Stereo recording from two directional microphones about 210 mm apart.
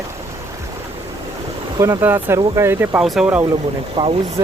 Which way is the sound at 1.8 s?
10° right (ahead or behind).